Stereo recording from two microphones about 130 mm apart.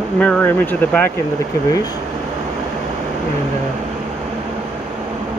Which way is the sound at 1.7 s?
25° left (ahead or behind).